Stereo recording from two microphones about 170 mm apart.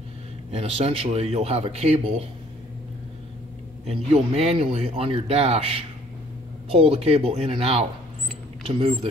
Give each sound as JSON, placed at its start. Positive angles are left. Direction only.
{"t": 0.5, "sound": "speech", "side_deg": -35}
{"t": 3.8, "sound": "speech", "side_deg": -35}